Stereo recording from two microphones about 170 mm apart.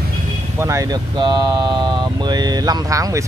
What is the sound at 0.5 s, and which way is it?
Speech, 20° right (ahead or behind).